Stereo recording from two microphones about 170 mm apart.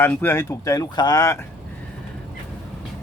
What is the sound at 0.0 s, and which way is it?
Speech, 15° left (ahead or behind).